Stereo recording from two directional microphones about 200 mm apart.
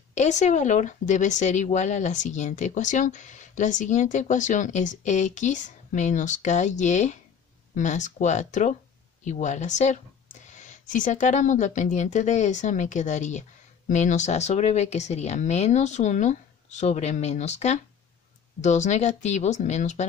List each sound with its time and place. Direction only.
0.1 s speech: 35° left (ahead or behind)